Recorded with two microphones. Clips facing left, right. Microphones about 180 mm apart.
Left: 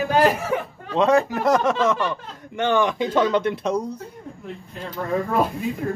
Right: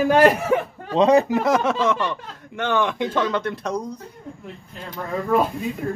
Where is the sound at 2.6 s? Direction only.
10° left (ahead or behind).